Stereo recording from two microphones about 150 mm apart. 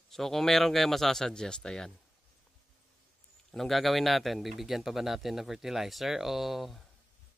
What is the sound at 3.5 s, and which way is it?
A man's voice, centre (ahead or behind).